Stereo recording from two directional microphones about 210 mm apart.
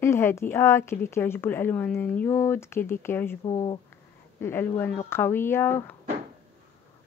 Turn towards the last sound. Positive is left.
turn(degrees=10)  # may be behind; listen again after turning